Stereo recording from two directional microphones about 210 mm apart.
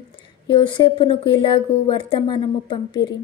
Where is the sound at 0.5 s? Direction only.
20° left (ahead or behind).